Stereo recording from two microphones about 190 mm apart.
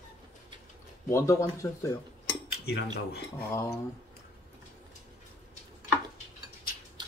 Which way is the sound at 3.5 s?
15° left (ahead or behind).